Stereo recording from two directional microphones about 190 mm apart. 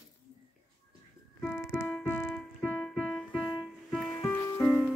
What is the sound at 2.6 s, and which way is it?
Music, 5° left (ahead or behind).